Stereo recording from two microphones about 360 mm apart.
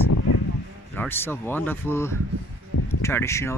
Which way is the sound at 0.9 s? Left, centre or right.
Centre.